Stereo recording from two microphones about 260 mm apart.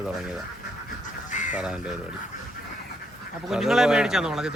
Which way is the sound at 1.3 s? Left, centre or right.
Left.